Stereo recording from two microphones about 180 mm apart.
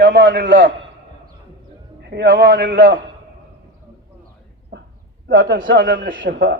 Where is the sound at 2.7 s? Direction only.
90° right.